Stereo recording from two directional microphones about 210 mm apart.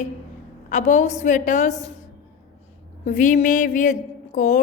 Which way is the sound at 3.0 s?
40° left (ahead or behind).